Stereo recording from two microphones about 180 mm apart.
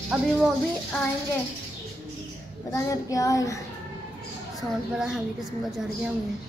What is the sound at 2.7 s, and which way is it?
Child singing, 20° left (ahead or behind).